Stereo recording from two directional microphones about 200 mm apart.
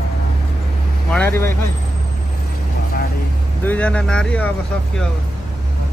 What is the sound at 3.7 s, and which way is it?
Speech, 5° left (ahead or behind).